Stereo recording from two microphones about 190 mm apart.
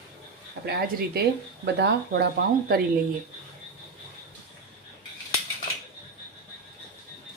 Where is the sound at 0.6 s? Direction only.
55° right (ahead or behind).